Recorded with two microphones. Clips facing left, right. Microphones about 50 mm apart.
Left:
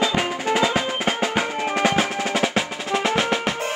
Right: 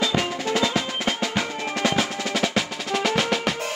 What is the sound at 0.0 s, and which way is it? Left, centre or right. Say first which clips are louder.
Drum: left 2 dB; left.